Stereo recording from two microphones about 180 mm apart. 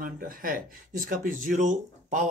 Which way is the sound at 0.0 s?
50° right (ahead or behind).